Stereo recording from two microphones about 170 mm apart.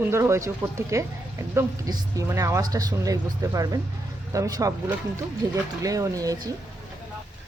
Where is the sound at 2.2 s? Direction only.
20° right (ahead or behind).